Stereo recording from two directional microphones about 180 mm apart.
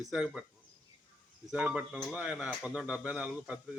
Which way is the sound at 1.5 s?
5° right (ahead or behind).